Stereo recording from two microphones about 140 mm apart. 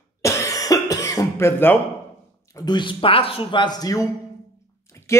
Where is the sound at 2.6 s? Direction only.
30° left (ahead or behind).